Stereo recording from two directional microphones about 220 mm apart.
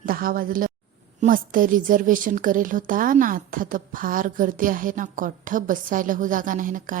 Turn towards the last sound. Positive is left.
turn(degrees=-35)  # may be behind; listen again after turning